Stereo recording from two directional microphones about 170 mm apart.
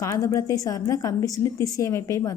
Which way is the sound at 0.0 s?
20° left (ahead or behind).